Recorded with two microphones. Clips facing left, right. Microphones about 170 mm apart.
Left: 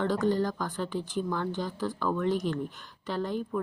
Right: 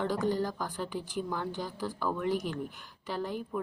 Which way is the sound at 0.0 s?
10° right (ahead or behind).